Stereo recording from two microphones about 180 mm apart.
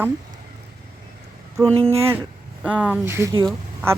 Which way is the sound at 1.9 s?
15° right (ahead or behind).